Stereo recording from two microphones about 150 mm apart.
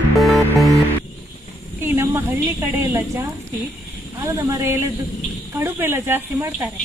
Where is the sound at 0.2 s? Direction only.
Centre (ahead or behind).